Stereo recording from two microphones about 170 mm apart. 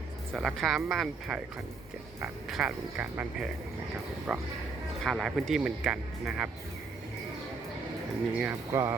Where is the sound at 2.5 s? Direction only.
5° right (ahead or behind).